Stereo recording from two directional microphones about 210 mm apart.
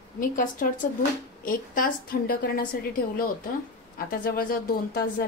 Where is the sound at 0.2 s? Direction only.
40° left (ahead or behind).